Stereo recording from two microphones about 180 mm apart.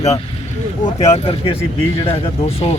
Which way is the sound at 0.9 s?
35° left (ahead or behind).